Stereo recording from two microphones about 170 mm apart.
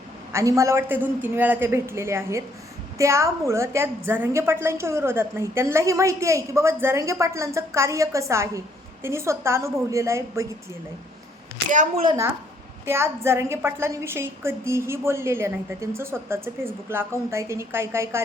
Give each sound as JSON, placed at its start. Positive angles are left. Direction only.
{"t": 0.3, "sound": "a woman's voice", "side_deg": -20}
{"t": 11.7, "sound": "a woman's voice", "side_deg": -45}
{"t": 12.8, "sound": "a woman's voice", "side_deg": -15}